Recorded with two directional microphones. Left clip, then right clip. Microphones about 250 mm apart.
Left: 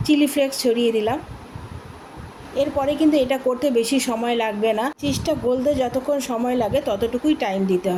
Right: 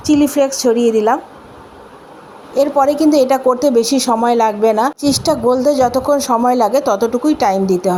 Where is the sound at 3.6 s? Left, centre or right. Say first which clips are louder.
Right 7 dB; centre.